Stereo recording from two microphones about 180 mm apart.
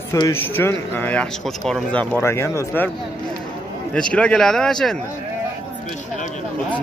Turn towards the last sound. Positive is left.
turn(degrees=5)  # may be behind; listen again after turning